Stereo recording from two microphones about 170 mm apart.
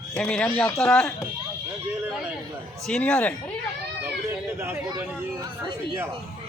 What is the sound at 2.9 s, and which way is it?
Speech, 5° left (ahead or behind).